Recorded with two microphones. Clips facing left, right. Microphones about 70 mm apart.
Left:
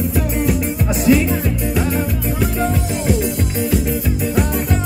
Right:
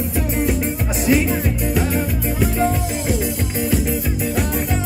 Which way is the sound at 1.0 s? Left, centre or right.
Right.